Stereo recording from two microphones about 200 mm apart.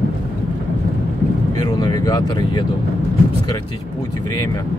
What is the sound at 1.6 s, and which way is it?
Speech, 20° left (ahead or behind).